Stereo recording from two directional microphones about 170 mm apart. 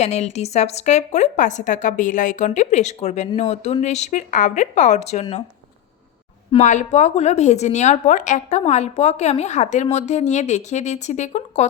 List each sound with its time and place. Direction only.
0.0 s a woman's voice: 40° left (ahead or behind)
6.5 s speech: 45° left (ahead or behind)